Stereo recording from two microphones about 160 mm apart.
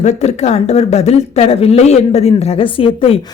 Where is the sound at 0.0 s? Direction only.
45° left (ahead or behind).